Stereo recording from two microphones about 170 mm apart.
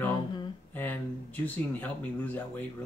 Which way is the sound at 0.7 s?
10° left (ahead or behind).